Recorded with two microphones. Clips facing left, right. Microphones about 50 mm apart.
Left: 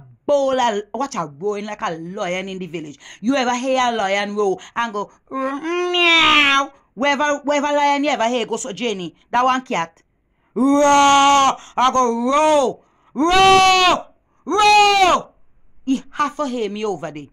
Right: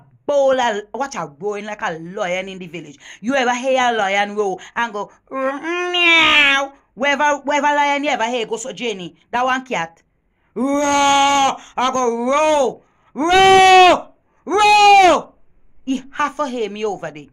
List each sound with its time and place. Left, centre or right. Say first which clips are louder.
0.3 s speech: right 1 dB; right
5.9 s a sound: right 1 dB; right
6.6 s speech: even; right
8.4 s speech: even; centre
10.5 s wail: left 4 dB; right
11.1 s speech: left 1 dB; right
11.9 s speech: right 2 dB; right
13.3 s speech: right 3 dB; centre
15.8 s speech: even; right